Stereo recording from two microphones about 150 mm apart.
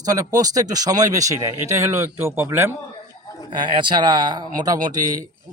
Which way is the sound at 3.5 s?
30° right (ahead or behind).